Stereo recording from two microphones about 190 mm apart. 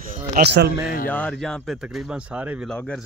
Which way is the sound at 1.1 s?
5° left (ahead or behind).